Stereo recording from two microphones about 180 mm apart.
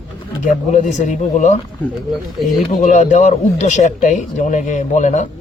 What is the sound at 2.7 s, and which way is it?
Speech, 45° left (ahead or behind).